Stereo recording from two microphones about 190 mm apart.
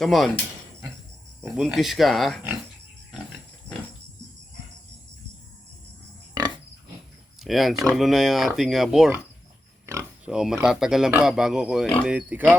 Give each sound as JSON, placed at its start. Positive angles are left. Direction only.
{"t": 0.0, "sound": "speech", "side_deg": 0}
{"t": 1.5, "sound": "speech", "side_deg": 0}
{"t": 6.4, "sound": "pig", "side_deg": -20}
{"t": 7.3, "sound": "speech", "side_deg": 0}